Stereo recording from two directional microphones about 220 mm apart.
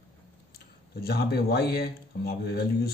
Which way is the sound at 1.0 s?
45° left (ahead or behind).